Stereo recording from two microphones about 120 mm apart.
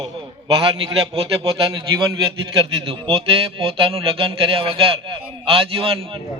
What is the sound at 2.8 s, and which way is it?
Speech, 50° right (ahead or behind).